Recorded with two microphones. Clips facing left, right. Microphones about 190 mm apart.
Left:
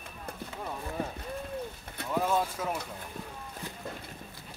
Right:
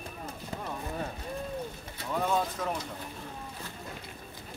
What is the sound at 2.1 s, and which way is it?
Vehicle, 5° left (ahead or behind).